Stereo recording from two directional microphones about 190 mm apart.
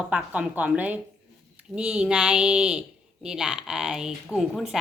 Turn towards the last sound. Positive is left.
turn(degrees=0)  # may be behind; listen again after turning